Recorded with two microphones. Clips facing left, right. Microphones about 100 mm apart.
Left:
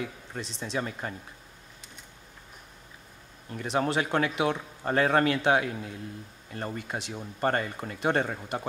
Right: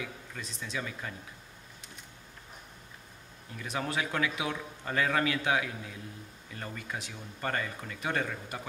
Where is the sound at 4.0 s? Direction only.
40° left (ahead or behind).